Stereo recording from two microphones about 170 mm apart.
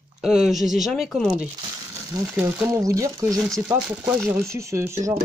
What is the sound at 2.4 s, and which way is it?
Speech, 15° right (ahead or behind).